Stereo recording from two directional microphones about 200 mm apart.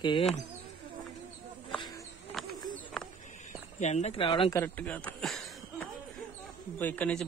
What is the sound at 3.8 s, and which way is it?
Speech, 35° left (ahead or behind).